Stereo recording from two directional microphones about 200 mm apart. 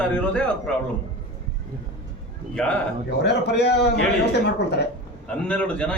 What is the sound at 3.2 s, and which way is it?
Speech, 55° left (ahead or behind).